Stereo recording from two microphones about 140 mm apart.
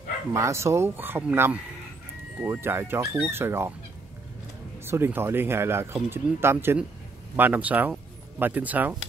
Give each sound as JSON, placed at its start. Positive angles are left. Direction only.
{"t": 0.3, "sound": "speech", "side_deg": -20}
{"t": 4.7, "sound": "speech", "side_deg": -15}